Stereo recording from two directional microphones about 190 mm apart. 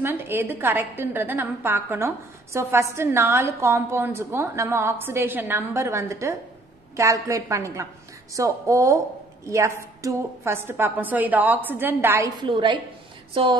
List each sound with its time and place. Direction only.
0.0 s a woman's voice: 10° right (ahead or behind)
12.4 s a woman's voice: 25° right (ahead or behind)